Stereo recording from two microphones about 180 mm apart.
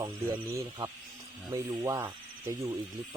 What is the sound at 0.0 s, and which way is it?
Speech, 20° right (ahead or behind).